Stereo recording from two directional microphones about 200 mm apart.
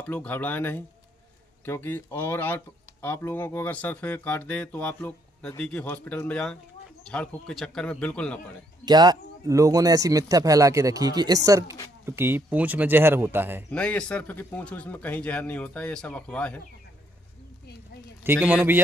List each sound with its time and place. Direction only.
0.0 s a man's voice: 10° left (ahead or behind)
8.8 s speech: 20° right (ahead or behind)
13.7 s speech: 5° left (ahead or behind)
18.2 s speech: 10° right (ahead or behind)